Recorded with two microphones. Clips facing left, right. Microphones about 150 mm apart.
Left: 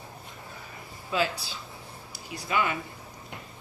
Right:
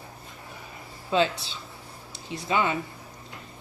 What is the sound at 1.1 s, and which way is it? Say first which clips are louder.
Speech: right 4 dB; 25° right (ahead or behind).